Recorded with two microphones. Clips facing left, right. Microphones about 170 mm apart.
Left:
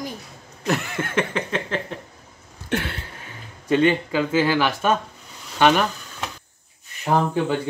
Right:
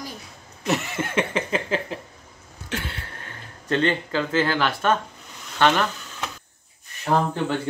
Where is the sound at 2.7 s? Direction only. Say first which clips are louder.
Left 6 dB; 55° left (ahead or behind).